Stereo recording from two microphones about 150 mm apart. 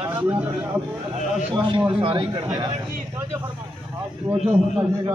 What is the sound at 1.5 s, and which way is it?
Speech, 30° right (ahead or behind).